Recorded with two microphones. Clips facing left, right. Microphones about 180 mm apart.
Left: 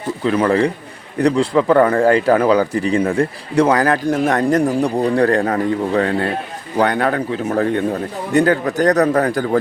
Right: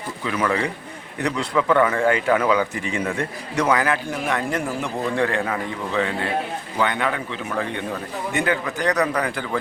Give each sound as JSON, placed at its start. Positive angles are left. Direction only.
{"t": 0.3, "sound": "speech", "side_deg": 35}